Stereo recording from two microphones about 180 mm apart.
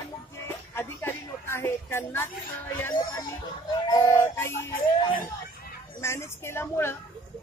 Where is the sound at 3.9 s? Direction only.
15° left (ahead or behind).